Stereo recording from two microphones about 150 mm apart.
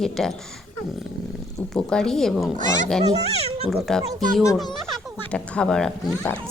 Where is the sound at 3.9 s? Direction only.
5° left (ahead or behind).